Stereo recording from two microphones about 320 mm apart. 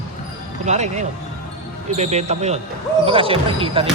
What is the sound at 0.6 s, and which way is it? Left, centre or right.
Speech, right.